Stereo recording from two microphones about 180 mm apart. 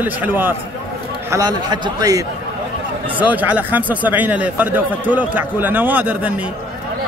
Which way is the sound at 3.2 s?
10° right (ahead or behind).